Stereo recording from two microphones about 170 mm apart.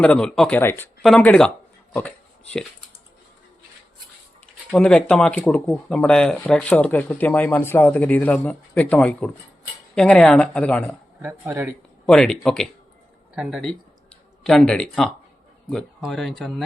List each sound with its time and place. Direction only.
0.0 s speech: 5° left (ahead or behind)
4.7 s speech: 5° left (ahead or behind)
11.2 s speech: 10° right (ahead or behind)
12.0 s speech: 5° left (ahead or behind)